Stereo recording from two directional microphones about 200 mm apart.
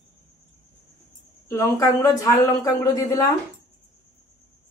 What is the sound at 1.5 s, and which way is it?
Speech, 15° left (ahead or behind).